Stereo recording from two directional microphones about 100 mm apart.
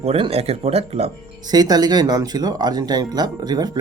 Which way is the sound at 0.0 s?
90° right.